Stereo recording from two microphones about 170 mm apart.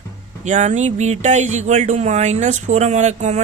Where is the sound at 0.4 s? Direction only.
45° right (ahead or behind).